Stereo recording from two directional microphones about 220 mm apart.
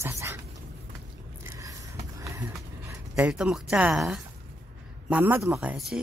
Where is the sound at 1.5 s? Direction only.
15° right (ahead or behind).